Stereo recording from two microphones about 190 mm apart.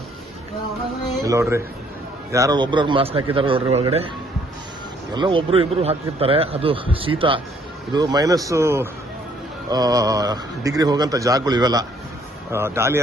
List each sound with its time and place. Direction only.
1.2 s a man's voice: 15° right (ahead or behind); by 4.1 s 30° right (ahead or behind)
5.1 s a man's voice: 25° right (ahead or behind)